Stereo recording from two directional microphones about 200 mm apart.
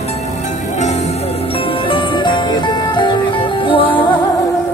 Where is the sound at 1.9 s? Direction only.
25° left (ahead or behind).